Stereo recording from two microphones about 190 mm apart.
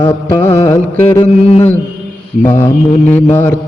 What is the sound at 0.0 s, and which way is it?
Music, 20° left (ahead or behind).